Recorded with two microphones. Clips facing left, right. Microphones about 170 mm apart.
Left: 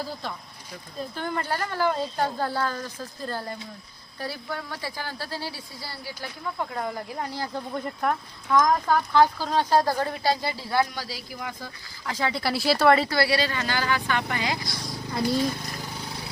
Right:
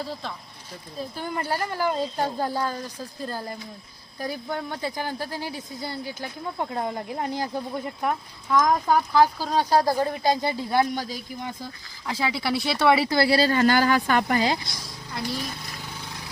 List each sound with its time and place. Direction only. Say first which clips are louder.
0.0 s speech: even; centre (ahead or behind)
0.7 s a woman's voice: right 1 dB; 10° right (ahead or behind)
12.0 s speech: right 1 dB; 5° right (ahead or behind)
13.1 s speech: right 4 dB; 25° right (ahead or behind)